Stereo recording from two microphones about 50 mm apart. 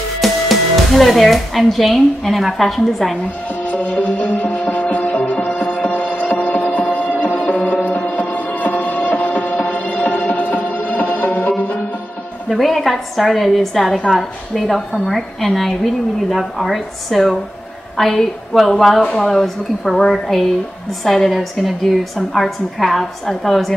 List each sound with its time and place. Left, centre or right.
0.2 s speech: centre
3.6 s music: left
12.4 s a woman's voice: centre